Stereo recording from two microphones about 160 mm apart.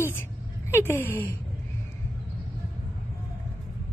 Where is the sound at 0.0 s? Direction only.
15° left (ahead or behind).